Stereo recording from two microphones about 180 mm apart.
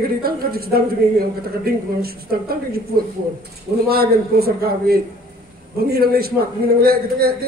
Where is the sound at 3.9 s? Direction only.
60° right (ahead or behind).